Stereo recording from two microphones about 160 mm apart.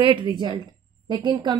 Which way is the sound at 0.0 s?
30° right (ahead or behind).